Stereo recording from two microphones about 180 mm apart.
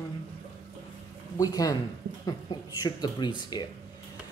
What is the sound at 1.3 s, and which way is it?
Speech, 20° left (ahead or behind).